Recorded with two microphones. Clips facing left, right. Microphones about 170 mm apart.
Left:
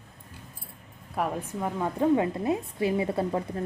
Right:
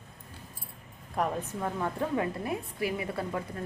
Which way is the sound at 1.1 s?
5° left (ahead or behind).